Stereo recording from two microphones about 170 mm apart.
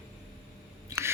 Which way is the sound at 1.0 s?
15° right (ahead or behind).